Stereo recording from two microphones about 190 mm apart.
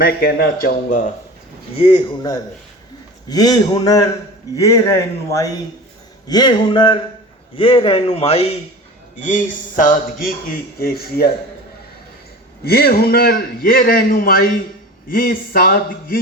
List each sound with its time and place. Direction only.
0.0 s a man's voice: 55° left (ahead or behind)
1.7 s a man's voice: 30° left (ahead or behind)
3.2 s a man's voice: 20° left (ahead or behind); by 11.3 s 55° left (ahead or behind)
12.6 s a man's voice: 55° left (ahead or behind)